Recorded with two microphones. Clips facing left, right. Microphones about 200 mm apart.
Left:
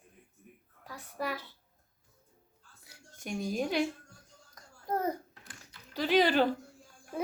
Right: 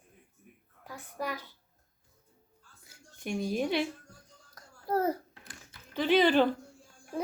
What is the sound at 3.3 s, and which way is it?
Speech, 45° left (ahead or behind).